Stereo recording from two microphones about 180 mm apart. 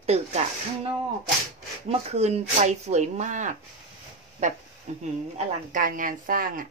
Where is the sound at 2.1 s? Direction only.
35° right (ahead or behind).